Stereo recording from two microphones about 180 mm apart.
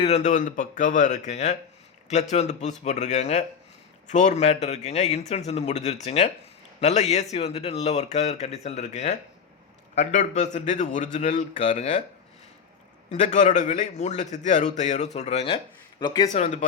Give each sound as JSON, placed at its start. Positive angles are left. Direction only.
{"t": 0.0, "sound": "a man's voice", "side_deg": 40}
{"t": 13.1, "sound": "a man's voice", "side_deg": 40}
{"t": 16.0, "sound": "speech", "side_deg": 25}
{"t": 16.3, "sound": "a man's voice", "side_deg": 40}